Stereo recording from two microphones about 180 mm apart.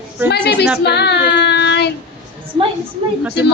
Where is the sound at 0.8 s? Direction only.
70° left (ahead or behind).